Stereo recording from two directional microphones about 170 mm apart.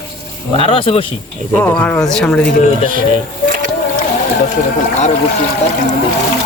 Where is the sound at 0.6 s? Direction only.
30° left (ahead or behind).